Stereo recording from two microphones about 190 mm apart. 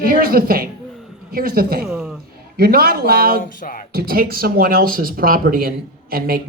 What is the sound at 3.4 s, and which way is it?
Music, 45° left (ahead or behind).